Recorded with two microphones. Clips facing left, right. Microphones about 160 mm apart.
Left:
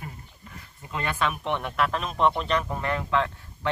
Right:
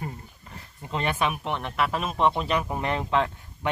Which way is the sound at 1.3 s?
Centre (ahead or behind).